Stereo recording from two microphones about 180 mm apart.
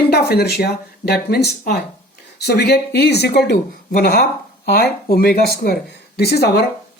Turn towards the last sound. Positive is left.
turn(degrees=65)  # may be behind; listen again after turning